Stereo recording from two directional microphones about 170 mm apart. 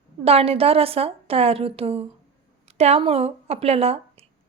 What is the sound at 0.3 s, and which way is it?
A woman's voice, 35° right (ahead or behind).